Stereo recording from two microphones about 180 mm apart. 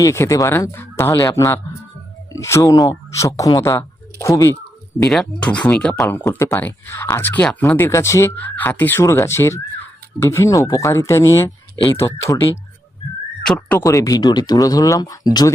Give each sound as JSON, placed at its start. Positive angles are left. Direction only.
{"t": 0.0, "sound": "speech", "side_deg": 15}
{"t": 5.0, "sound": "speech", "side_deg": 5}
{"t": 13.4, "sound": "speech", "side_deg": 5}
{"t": 13.8, "sound": "speech", "side_deg": 20}